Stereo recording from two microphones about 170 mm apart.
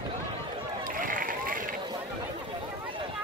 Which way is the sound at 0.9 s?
55° right (ahead or behind).